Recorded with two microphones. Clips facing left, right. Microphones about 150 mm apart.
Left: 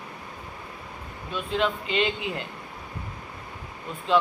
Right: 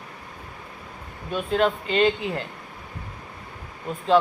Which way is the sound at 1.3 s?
45° right (ahead or behind).